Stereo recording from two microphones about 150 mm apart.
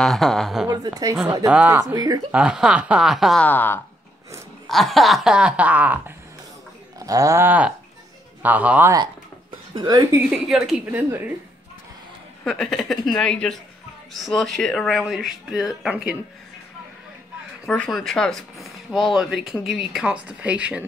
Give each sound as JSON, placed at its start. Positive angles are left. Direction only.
{"t": 0.0, "sound": "speech", "side_deg": 0}
{"t": 0.7, "sound": "a sound", "side_deg": -25}
{"t": 1.5, "sound": "a woman's voice", "side_deg": -5}
{"t": 1.8, "sound": "a sound", "side_deg": -20}
{"t": 2.3, "sound": "speech", "side_deg": -5}
{"t": 3.4, "sound": "speech", "side_deg": 15}
{"t": 4.6, "sound": "speech", "side_deg": 0}
{"t": 7.0, "sound": "a sound", "side_deg": -25}
{"t": 8.4, "sound": "a woman's voice", "side_deg": -10}
{"t": 9.8, "sound": "a sound", "side_deg": -25}
{"t": 10.3, "sound": "a woman's voice", "side_deg": -5}
{"t": 12.4, "sound": "speech", "side_deg": 0}
{"t": 17.6, "sound": "speech", "side_deg": 0}